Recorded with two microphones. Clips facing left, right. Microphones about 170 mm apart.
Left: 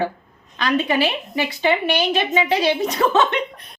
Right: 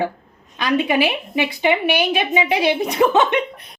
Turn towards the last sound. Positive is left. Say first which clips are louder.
# right 2 dB
turn(degrees=-15)  # may be behind; listen again after turning